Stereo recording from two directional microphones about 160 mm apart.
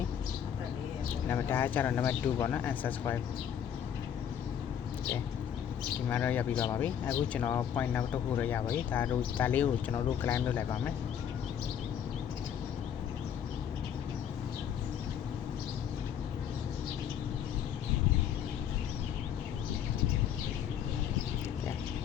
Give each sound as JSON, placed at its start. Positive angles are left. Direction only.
{"t": 1.3, "sound": "speech", "side_deg": 15}
{"t": 6.1, "sound": "speech", "side_deg": 10}